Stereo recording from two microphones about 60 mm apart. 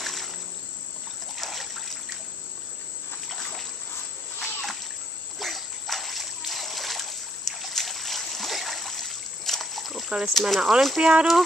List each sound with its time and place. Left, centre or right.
0.0 s insect: centre
1.3 s water: centre
4.4 s splash: centre
10.3 s speech: centre
11.0 s speech: centre